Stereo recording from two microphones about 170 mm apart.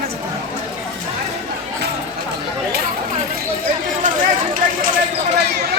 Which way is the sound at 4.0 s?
50° right (ahead or behind).